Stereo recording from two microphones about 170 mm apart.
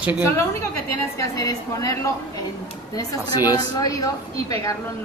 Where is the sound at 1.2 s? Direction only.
20° left (ahead or behind).